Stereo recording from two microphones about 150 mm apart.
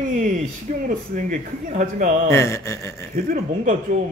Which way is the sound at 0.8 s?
60° right (ahead or behind).